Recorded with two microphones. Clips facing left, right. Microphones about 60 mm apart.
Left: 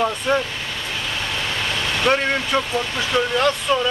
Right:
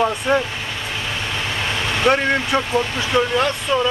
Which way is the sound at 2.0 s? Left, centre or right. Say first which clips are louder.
Right 3 dB; centre.